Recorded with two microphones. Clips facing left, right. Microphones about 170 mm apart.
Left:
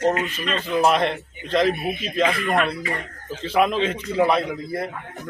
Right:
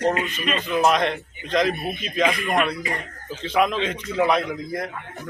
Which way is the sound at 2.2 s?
15° right (ahead or behind).